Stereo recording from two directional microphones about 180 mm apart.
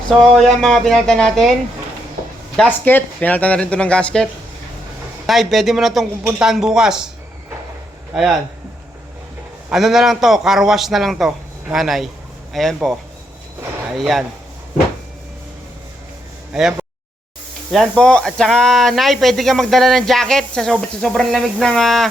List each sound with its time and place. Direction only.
0.2 s speech: centre (ahead or behind)
2.6 s speech: 10° left (ahead or behind)
8.1 s speech: 5° right (ahead or behind)
9.6 s speech: centre (ahead or behind)
16.5 s speech: 5° right (ahead or behind)